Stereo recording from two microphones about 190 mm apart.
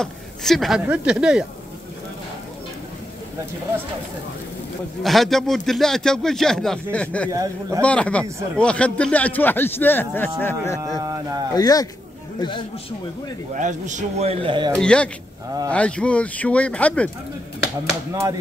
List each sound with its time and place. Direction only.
0.0 s a man's voice: centre (ahead or behind)
5.0 s a man's voice: centre (ahead or behind)
7.2 s a man's voice: 15° right (ahead or behind)
7.8 s speech: 5° left (ahead or behind)
10.8 s speech: 20° right (ahead or behind)
11.5 s speech: 20° left (ahead or behind)
13.6 s speech: 40° right (ahead or behind)
14.8 s a man's voice: 5° left (ahead or behind)